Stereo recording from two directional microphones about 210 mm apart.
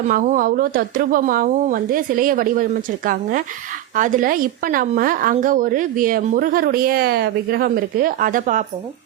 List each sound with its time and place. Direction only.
0.1 s a woman's voice: 40° right (ahead or behind)